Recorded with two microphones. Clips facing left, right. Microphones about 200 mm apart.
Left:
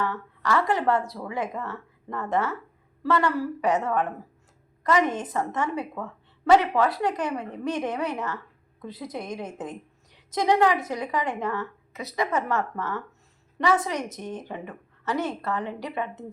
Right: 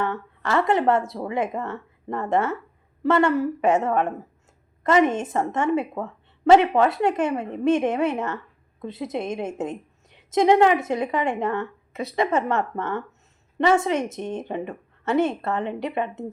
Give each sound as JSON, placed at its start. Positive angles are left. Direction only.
{"t": 0.0, "sound": "a woman's voice", "side_deg": -25}